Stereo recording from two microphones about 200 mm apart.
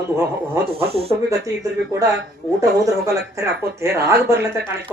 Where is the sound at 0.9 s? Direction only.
30° right (ahead or behind).